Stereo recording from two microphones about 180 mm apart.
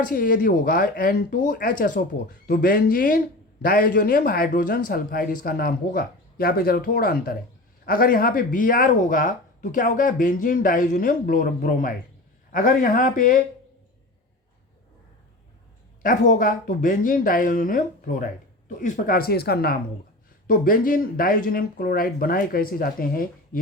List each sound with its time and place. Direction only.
0.0 s speech: 50° left (ahead or behind)
16.0 s speech: 45° left (ahead or behind)